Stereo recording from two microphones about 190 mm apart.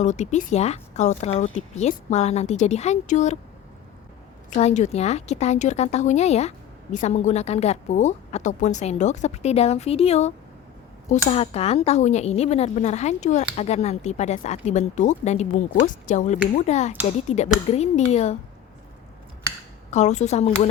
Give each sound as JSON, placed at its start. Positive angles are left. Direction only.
{"t": 0.0, "sound": "speech", "side_deg": 40}
{"t": 4.5, "sound": "speech", "side_deg": 40}
{"t": 19.9, "sound": "speech", "side_deg": 35}